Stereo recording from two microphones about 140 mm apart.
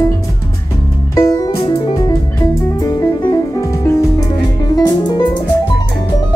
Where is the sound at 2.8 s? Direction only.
20° left (ahead or behind).